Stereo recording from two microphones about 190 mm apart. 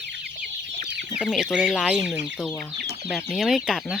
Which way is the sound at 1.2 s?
Centre (ahead or behind).